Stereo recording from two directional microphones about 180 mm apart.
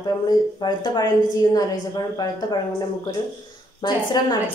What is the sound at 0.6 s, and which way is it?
A woman's voice, 20° left (ahead or behind).